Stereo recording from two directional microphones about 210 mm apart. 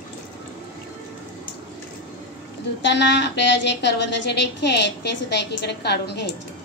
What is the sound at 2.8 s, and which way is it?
A woman's voice, 55° left (ahead or behind).